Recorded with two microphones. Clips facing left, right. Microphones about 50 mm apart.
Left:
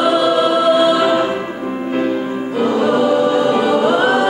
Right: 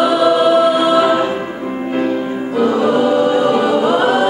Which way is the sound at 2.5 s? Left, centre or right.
Left.